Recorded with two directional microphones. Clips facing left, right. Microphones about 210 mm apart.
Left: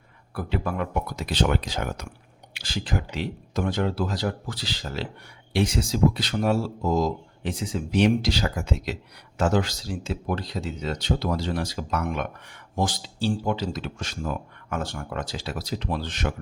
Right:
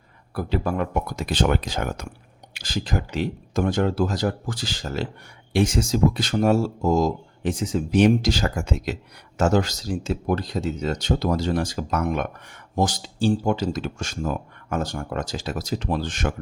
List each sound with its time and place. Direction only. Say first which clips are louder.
0.3 s speech: right 3 dB; 40° right (ahead or behind)